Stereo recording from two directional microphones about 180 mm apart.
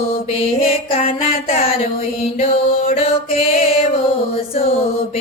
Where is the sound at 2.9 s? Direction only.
35° left (ahead or behind).